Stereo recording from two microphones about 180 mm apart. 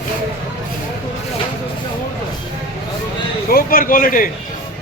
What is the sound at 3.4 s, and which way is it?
Speech, 55° left (ahead or behind).